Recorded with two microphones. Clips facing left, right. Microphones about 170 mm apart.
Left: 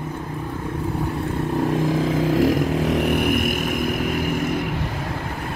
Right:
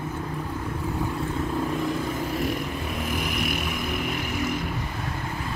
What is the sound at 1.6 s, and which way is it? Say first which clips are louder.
Vehicle: left 8 dB; 90° left.